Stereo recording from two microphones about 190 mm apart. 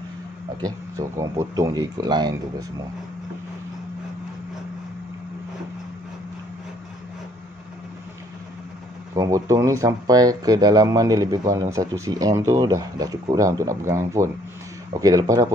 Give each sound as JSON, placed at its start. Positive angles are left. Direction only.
{"t": 0.6, "sound": "speech", "side_deg": -15}
{"t": 9.1, "sound": "speech", "side_deg": -15}